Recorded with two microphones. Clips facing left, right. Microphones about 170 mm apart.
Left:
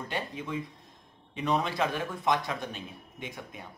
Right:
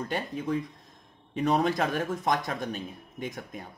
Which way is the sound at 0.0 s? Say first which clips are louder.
Right 4 dB; 40° right (ahead or behind).